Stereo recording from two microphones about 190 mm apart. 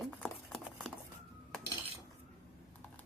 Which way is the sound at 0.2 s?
5° left (ahead or behind).